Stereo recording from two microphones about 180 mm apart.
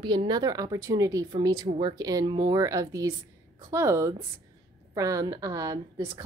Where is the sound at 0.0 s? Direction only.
25° right (ahead or behind).